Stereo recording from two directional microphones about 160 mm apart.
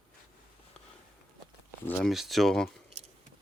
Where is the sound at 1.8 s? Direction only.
10° left (ahead or behind).